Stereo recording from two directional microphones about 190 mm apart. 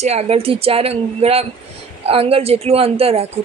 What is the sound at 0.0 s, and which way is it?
A woman's voice, 35° right (ahead or behind).